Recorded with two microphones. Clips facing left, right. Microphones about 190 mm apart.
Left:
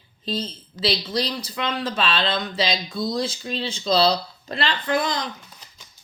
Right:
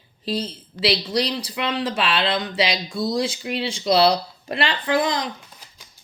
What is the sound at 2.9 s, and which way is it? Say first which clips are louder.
Speech: right 2 dB; 25° right (ahead or behind).